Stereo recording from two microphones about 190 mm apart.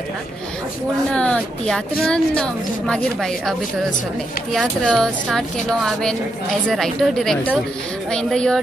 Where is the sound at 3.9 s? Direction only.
45° left (ahead or behind).